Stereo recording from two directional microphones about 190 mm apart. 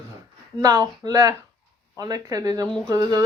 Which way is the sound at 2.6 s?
5° left (ahead or behind).